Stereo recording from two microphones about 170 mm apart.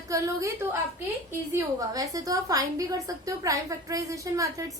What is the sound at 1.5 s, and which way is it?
A woman's voice, 20° right (ahead or behind).